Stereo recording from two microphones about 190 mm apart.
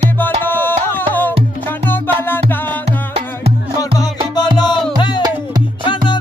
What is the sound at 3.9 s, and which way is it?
Music, 20° left (ahead or behind).